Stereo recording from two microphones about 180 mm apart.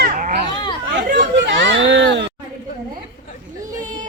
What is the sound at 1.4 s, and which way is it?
Speech, 90° right.